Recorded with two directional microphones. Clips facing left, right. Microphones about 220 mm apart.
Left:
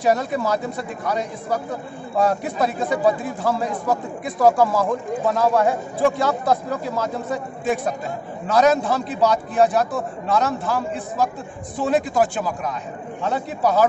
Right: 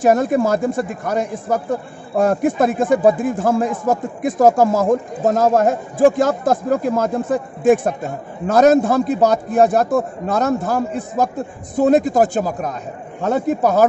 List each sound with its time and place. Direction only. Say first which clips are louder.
0.0 s speech: right 6 dB; 50° right (ahead or behind)